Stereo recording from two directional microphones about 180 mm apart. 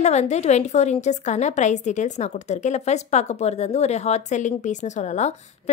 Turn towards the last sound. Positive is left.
turn(degrees=40)  # may be behind; listen again after turning